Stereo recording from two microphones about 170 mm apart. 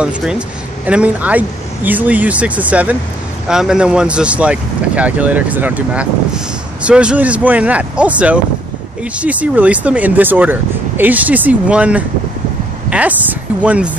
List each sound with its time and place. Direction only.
0.0 s speech: 5° right (ahead or behind)